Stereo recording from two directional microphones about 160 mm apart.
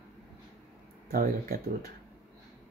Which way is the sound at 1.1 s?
65° right (ahead or behind).